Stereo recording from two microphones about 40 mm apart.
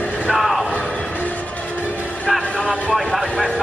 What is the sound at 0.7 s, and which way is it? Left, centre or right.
Music, left.